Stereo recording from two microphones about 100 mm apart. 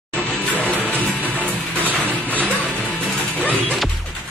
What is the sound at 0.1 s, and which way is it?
Music, 15° left (ahead or behind).